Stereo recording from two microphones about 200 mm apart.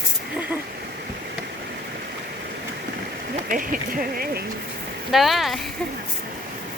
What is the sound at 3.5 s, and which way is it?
Speech, 45° right (ahead or behind).